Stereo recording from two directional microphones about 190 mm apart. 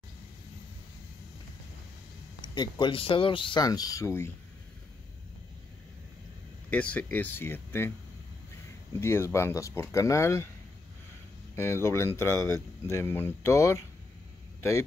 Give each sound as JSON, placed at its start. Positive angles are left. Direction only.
{"t": 2.5, "sound": "speech", "side_deg": 25}
{"t": 6.7, "sound": "speech", "side_deg": 5}
{"t": 9.0, "sound": "speech", "side_deg": 15}
{"t": 11.5, "sound": "speech", "side_deg": 15}